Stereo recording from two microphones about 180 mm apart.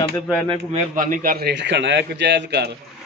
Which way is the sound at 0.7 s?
45° right (ahead or behind).